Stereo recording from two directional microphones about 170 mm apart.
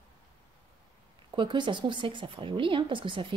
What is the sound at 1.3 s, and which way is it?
Speech, 30° right (ahead or behind).